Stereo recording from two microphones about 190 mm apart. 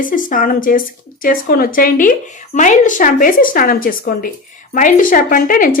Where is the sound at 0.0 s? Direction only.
45° left (ahead or behind).